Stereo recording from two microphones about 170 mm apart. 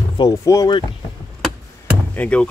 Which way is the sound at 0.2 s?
20° left (ahead or behind).